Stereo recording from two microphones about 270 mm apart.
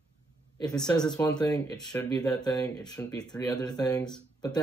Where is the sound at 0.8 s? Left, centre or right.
Centre.